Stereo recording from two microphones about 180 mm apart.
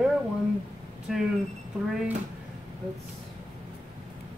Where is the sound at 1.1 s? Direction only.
Centre (ahead or behind).